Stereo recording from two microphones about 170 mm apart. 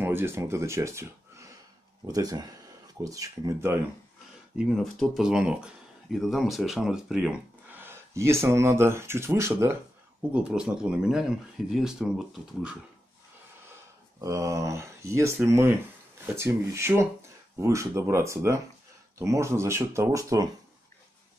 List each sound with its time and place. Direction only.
0.0 s speech: 15° right (ahead or behind)
2.0 s speech: 20° right (ahead or behind)
4.6 s speech: centre (ahead or behind); by 9.7 s 15° right (ahead or behind)
10.3 s speech: 5° right (ahead or behind)
14.2 s speech: 20° right (ahead or behind)